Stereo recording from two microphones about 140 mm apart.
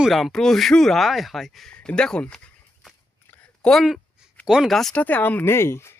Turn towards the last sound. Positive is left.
turn(degrees=20)  # may be behind; listen again after turning